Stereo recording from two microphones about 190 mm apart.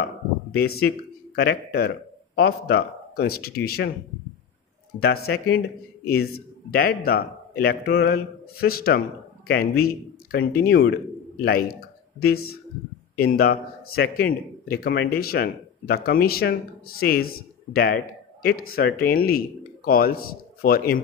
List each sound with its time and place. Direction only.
0.5 s speech: 55° left (ahead or behind)
5.0 s speech: 55° left (ahead or behind)